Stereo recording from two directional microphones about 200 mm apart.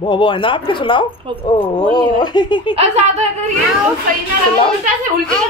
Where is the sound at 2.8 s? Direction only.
30° right (ahead or behind).